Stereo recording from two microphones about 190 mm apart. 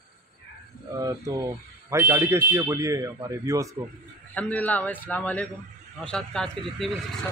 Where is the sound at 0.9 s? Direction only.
20° right (ahead or behind).